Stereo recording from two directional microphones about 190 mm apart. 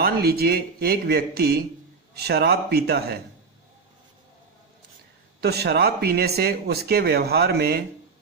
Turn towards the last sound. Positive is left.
turn(degrees=-55)  # may be behind; listen again after turning